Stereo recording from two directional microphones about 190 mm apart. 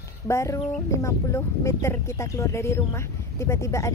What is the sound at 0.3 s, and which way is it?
Speech, 15° left (ahead or behind).